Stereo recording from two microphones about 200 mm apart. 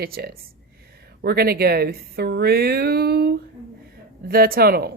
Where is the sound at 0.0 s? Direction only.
50° right (ahead or behind).